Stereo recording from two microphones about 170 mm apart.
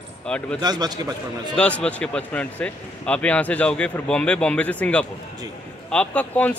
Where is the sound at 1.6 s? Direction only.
10° left (ahead or behind).